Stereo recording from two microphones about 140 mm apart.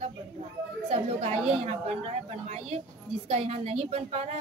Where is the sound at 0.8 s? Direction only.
45° right (ahead or behind).